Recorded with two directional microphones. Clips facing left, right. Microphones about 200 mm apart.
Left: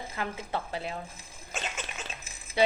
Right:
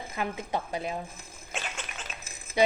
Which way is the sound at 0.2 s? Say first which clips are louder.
Right 3 dB; 15° right (ahead or behind).